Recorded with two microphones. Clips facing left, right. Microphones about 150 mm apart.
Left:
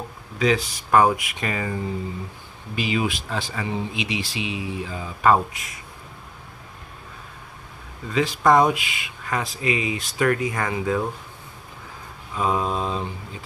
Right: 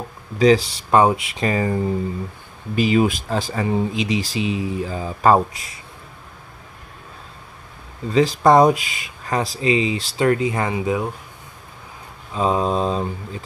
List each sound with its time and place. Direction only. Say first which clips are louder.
0.4 s speech: right 7 dB; 35° right (ahead or behind)
8.1 s speech: right 4 dB; 35° right (ahead or behind); by 11.0 s 20° right (ahead or behind)
12.4 s speech: right 4 dB; 30° right (ahead or behind)